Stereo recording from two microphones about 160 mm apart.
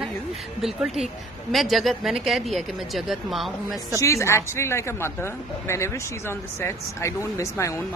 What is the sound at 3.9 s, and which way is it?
Speech, 20° left (ahead or behind).